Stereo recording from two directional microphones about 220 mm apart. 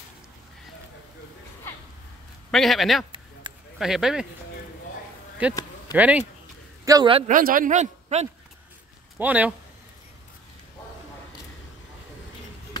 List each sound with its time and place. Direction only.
2.5 s speech: centre (ahead or behind)
5.5 s a sound: 20° left (ahead or behind)
5.9 s speech: 5° right (ahead or behind)
6.8 s a man's voice: 15° right (ahead or behind)
7.2 s speech: 40° right (ahead or behind)
9.2 s speech: 5° right (ahead or behind)